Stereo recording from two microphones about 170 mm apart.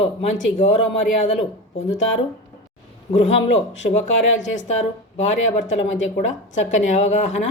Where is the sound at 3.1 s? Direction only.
40° left (ahead or behind).